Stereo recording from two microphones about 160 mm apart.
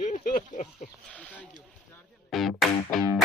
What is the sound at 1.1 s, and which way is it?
Speech, 10° left (ahead or behind).